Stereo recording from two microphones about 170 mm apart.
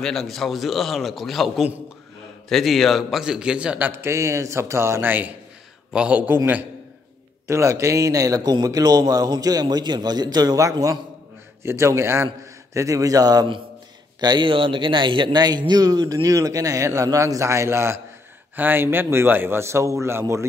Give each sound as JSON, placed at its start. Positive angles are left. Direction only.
{"t": 0.0, "sound": "a man's voice", "side_deg": 0}